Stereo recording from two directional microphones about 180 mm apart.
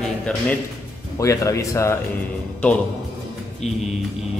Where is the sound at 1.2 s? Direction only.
15° left (ahead or behind).